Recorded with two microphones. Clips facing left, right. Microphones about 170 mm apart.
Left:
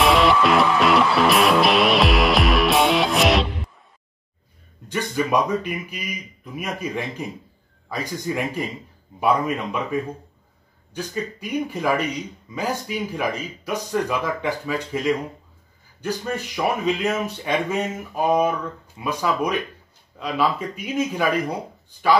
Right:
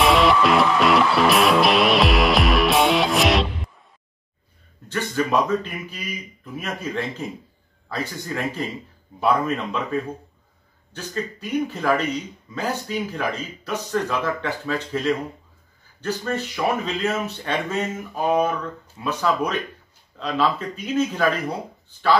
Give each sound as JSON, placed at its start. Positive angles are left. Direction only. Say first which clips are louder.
{"t": 0.0, "sound": "music", "louder": "even", "side_deg": 0}
{"t": 4.8, "sound": "speech", "louder": "even", "side_deg": 15}